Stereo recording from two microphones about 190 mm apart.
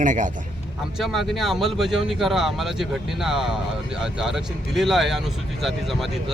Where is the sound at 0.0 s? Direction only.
40° right (ahead or behind).